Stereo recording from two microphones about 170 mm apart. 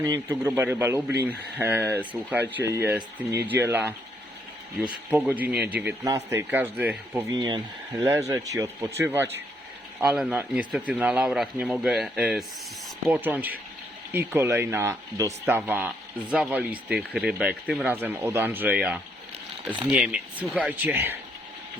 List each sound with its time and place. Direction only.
0.0 s speech: 15° right (ahead or behind)
5.1 s speech: 10° right (ahead or behind)
7.3 s speech: 25° right (ahead or behind)